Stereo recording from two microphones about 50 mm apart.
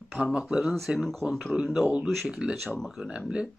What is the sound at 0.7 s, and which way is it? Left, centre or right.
Speech, centre.